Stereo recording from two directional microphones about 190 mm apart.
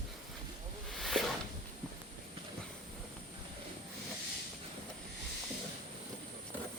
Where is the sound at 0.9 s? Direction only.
Centre (ahead or behind).